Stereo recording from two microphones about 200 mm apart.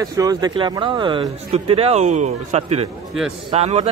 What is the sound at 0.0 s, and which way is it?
Speech, 20° right (ahead or behind).